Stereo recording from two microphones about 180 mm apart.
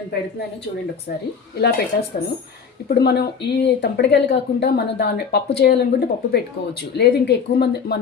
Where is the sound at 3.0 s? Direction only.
65° left (ahead or behind).